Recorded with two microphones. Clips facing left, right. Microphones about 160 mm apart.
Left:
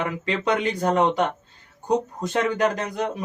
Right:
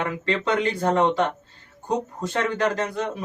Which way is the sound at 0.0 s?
15° left (ahead or behind).